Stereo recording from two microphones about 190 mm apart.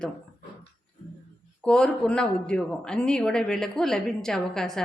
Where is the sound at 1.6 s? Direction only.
5° left (ahead or behind).